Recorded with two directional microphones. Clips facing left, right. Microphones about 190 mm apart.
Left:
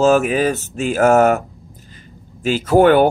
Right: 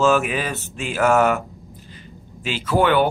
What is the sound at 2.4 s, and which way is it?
Speech, 45° left (ahead or behind).